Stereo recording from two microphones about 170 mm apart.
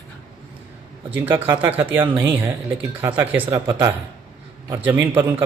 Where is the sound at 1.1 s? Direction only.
10° right (ahead or behind).